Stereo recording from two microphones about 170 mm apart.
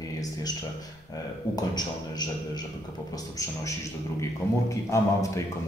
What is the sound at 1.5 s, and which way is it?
Speech, 25° left (ahead or behind).